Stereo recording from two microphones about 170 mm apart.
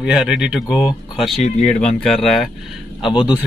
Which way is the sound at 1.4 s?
45° left (ahead or behind).